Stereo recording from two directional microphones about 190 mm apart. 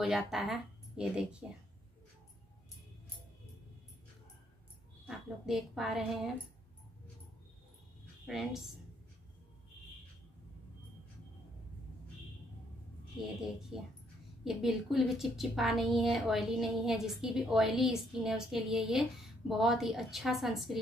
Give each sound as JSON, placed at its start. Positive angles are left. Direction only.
{"t": 0.0, "sound": "a woman's voice", "side_deg": 0}
{"t": 5.0, "sound": "a woman's voice", "side_deg": 0}
{"t": 8.3, "sound": "a woman's voice", "side_deg": 0}
{"t": 13.7, "sound": "a woman's voice", "side_deg": -5}